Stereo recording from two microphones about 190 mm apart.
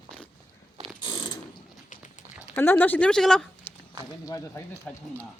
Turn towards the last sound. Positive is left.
turn(degrees=10)  # may be behind; listen again after turning